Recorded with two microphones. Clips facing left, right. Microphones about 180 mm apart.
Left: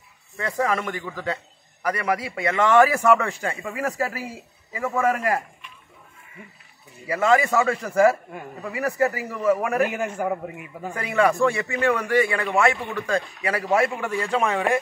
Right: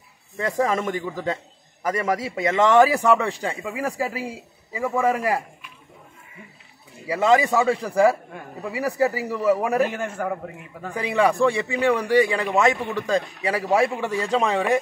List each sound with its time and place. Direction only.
0.4 s a man's voice: 20° right (ahead or behind)
7.1 s a man's voice: 20° right (ahead or behind)
8.7 s a man's voice: 15° right (ahead or behind)
9.8 s a man's voice: 10° left (ahead or behind)
11.0 s a man's voice: 15° right (ahead or behind)